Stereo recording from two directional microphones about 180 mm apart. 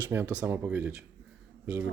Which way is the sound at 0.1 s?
10° right (ahead or behind).